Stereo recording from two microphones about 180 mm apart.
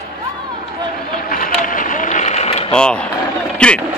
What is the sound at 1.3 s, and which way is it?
Vehicle, 50° left (ahead or behind).